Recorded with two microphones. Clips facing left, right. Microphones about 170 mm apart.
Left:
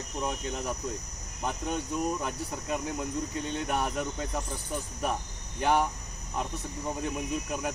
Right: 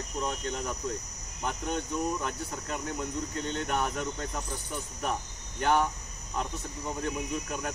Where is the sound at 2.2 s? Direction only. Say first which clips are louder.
Left 1 dB; 10° left (ahead or behind).